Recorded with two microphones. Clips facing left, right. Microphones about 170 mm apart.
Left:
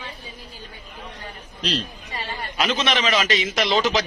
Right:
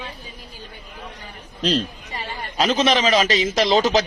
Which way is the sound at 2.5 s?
35° right (ahead or behind).